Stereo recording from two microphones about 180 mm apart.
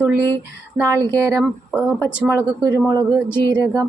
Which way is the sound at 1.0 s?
20° right (ahead or behind).